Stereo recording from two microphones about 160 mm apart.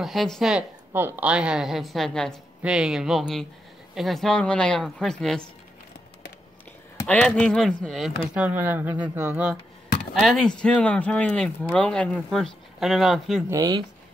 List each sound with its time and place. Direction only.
0.0 s a woman's voice: centre (ahead or behind)
7.1 s a woman's voice: 5° left (ahead or behind)
8.2 s speech: 10° right (ahead or behind)
10.1 s a woman's voice: centre (ahead or behind)
13.5 s speech: 25° right (ahead or behind)